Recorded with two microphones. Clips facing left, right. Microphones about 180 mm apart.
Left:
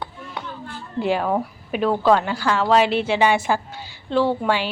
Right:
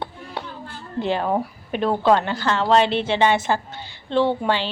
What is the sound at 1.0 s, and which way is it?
A woman's voice, 10° left (ahead or behind).